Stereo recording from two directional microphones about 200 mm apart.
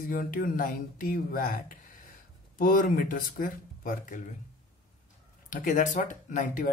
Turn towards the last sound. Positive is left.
turn(degrees=40)  # may be behind; listen again after turning